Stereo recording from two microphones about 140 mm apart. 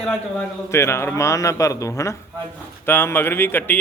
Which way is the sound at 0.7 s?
20° left (ahead or behind).